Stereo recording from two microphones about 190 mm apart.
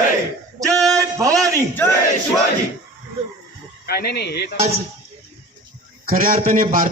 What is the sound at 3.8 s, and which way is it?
Speech, 55° left (ahead or behind).